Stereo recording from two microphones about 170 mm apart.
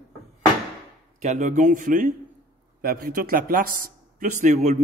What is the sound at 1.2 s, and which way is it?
Speech, 45° right (ahead or behind).